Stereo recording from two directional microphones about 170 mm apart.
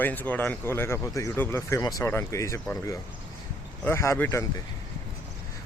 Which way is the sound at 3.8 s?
15° left (ahead or behind).